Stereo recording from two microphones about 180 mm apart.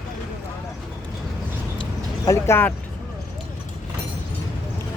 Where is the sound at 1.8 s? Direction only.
20° left (ahead or behind).